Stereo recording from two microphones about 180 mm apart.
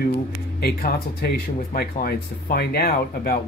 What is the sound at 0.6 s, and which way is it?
Speech, 55° left (ahead or behind).